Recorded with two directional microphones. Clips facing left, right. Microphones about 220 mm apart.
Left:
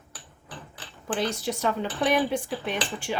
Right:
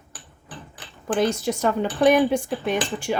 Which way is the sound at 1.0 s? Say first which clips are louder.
Right 6 dB; 45° right (ahead or behind).